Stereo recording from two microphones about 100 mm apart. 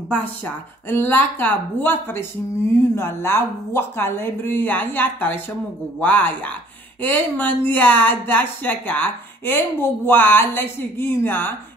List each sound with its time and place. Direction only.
0.8 s speech: 20° left (ahead or behind)